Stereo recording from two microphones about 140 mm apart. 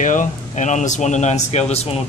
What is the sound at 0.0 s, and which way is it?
Speech, 65° left (ahead or behind).